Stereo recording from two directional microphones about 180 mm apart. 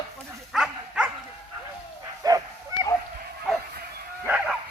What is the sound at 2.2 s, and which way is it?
Bow-wow, 20° right (ahead or behind).